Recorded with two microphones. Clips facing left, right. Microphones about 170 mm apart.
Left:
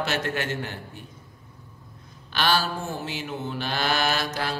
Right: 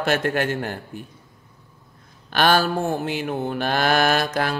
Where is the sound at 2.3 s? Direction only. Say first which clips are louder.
Right 6 dB; 50° right (ahead or behind).